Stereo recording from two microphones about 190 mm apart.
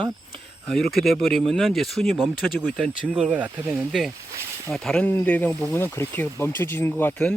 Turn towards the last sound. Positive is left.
turn(degrees=10)  # may be behind; listen again after turning